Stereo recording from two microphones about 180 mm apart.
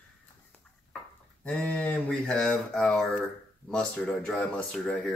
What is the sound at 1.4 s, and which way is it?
Speech, 5° left (ahead or behind).